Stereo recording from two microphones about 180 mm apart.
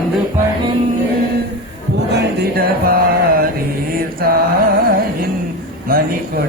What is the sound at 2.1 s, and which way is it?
Mantra, 65° right (ahead or behind).